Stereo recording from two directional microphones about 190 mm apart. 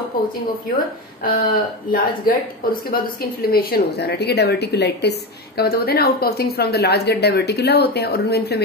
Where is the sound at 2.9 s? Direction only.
55° left (ahead or behind).